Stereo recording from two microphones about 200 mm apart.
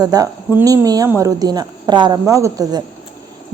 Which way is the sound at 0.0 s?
20° right (ahead or behind).